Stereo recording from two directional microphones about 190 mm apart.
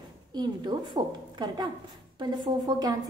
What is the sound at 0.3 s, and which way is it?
A woman's voice, 20° right (ahead or behind).